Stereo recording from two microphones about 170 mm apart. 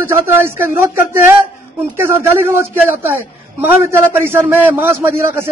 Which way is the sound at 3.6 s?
15° right (ahead or behind).